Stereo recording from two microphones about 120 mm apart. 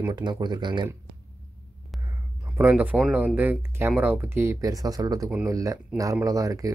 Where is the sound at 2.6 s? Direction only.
15° right (ahead or behind).